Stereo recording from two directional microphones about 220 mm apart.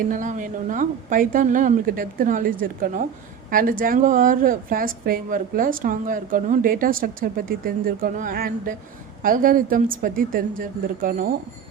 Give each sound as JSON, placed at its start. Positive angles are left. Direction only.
{"t": 0.0, "sound": "a woman's voice", "side_deg": -35}